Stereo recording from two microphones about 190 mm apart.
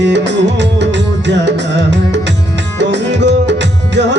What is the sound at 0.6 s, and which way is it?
Music, 65° right (ahead or behind).